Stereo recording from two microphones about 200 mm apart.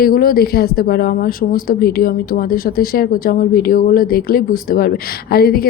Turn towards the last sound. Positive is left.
turn(degrees=50)  # may be behind; listen again after turning